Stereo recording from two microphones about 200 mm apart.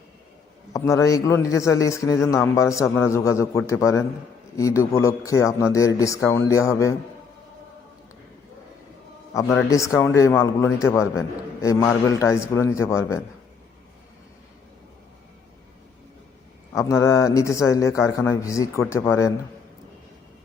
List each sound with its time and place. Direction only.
0.7 s a man's voice: 15° left (ahead or behind)
9.3 s a man's voice: 15° left (ahead or behind)
16.7 s a man's voice: 15° left (ahead or behind)